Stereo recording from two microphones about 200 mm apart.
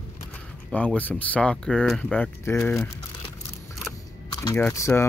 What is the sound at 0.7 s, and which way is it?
Speech, 5° left (ahead or behind).